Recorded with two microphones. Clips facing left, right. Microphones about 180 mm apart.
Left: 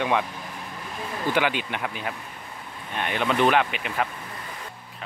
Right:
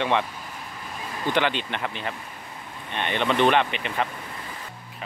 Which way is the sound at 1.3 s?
10° left (ahead or behind).